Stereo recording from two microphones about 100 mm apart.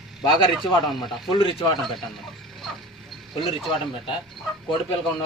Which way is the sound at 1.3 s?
55° left (ahead or behind).